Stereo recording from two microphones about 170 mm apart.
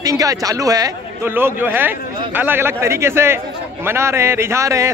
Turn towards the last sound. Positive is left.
turn(degrees=-15)  # may be behind; listen again after turning